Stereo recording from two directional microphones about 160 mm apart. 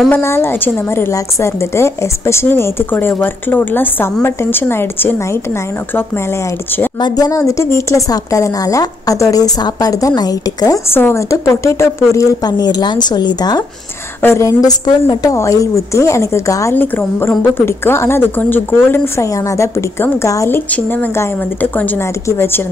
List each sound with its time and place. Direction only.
0.1 s a woman's voice: 15° left (ahead or behind)
7.0 s a woman's voice: 20° left (ahead or behind)